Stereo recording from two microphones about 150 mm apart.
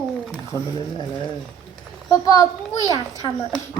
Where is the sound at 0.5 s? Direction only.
15° left (ahead or behind).